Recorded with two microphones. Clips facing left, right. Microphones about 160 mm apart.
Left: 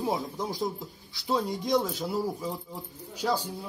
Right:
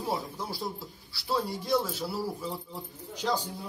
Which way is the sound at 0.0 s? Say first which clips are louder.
Left 3 dB; 15° left (ahead or behind).